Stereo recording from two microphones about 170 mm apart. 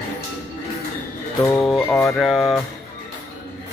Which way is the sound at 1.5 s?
Centre (ahead or behind).